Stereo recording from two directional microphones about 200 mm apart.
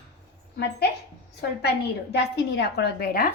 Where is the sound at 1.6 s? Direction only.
55° left (ahead or behind).